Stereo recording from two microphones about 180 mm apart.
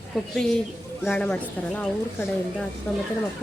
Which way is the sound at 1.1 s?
5° left (ahead or behind).